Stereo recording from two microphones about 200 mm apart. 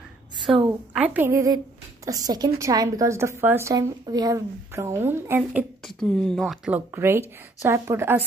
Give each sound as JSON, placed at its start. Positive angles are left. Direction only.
{"t": 0.5, "sound": "a woman's voice", "side_deg": 0}
{"t": 5.9, "sound": "a woman's voice", "side_deg": 5}